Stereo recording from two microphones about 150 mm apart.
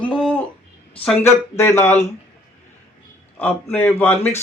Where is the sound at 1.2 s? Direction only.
15° left (ahead or behind).